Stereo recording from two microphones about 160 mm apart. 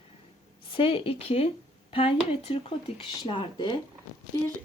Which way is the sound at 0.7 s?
35° left (ahead or behind).